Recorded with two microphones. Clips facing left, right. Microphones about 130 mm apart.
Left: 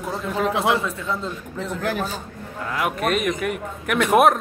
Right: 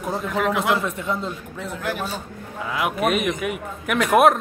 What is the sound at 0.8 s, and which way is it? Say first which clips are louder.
Speech: right 1 dB; 15° right (ahead or behind).